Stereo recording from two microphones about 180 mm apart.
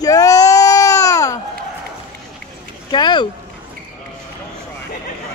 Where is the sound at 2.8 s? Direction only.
25° left (ahead or behind).